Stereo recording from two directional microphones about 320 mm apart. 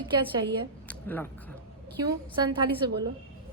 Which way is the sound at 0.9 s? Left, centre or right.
Centre.